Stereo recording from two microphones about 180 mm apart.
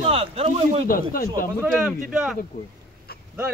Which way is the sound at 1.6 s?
10° right (ahead or behind).